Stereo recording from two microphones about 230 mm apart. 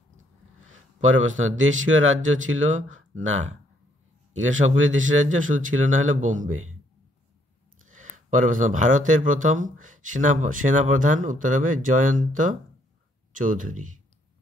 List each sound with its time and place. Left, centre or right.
1.0 s speech: right
4.4 s speech: right
5.9 s speech: right
7.8 s speech: right